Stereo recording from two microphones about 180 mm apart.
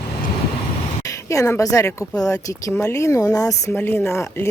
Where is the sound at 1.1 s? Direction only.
15° left (ahead or behind).